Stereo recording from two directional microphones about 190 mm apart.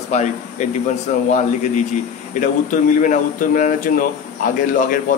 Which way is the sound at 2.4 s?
40° left (ahead or behind).